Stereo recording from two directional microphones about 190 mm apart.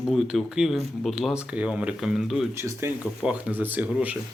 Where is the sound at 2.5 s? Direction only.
15° right (ahead or behind).